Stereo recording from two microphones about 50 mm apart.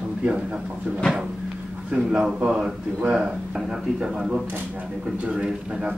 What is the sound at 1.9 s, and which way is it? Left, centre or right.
Speech, right.